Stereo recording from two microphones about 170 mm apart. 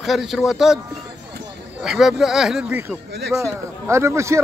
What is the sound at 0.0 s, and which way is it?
Speech, centre (ahead or behind).